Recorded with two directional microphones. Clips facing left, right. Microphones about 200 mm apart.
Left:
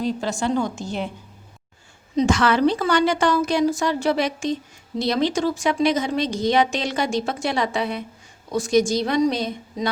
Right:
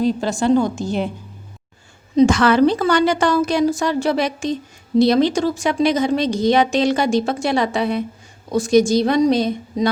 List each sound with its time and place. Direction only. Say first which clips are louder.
0.0 s a woman's voice: right 5 dB; 35° right (ahead or behind)
2.1 s a woman's voice: right 6 dB; 45° right (ahead or behind)